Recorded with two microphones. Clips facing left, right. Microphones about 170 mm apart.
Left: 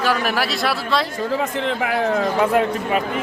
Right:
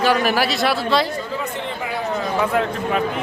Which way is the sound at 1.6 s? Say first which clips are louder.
Left 5 dB; 80° left.